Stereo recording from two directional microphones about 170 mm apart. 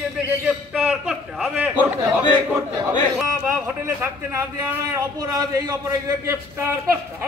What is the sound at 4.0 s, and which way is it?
A man's voice, 15° right (ahead or behind).